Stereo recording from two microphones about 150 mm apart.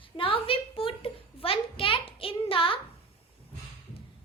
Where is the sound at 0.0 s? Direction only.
35° left (ahead or behind).